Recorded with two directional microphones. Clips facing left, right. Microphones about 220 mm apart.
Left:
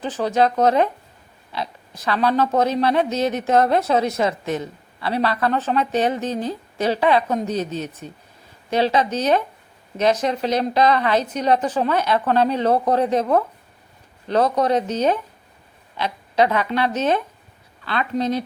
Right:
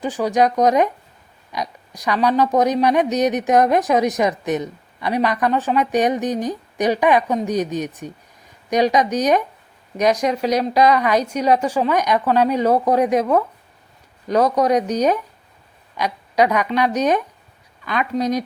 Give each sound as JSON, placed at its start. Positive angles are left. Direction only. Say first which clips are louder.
{"t": 0.0, "sound": "speech", "louder": "right 1 dB", "side_deg": -15}
{"t": 14.3, "sound": "speech", "louder": "right 2 dB", "side_deg": -10}